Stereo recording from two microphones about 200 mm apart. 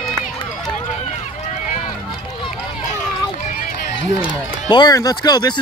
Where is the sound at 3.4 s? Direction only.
40° left (ahead or behind).